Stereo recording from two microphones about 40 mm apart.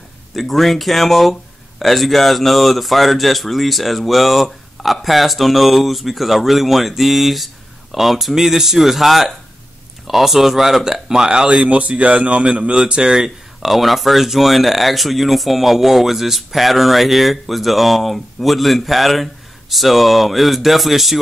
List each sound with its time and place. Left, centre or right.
0.4 s speech: centre; by 11.6 s right
11.6 s speech: right
13.1 s speech: centre